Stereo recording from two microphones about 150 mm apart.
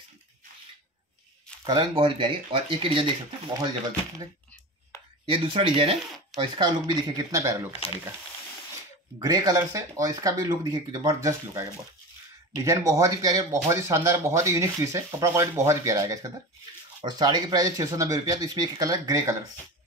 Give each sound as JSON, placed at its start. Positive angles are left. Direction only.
{"t": 1.6, "sound": "speech", "side_deg": -30}
{"t": 5.2, "sound": "speech", "side_deg": -35}
{"t": 7.7, "sound": "speech", "side_deg": 40}
{"t": 9.2, "sound": "speech", "side_deg": -25}
{"t": 12.6, "sound": "speech", "side_deg": -20}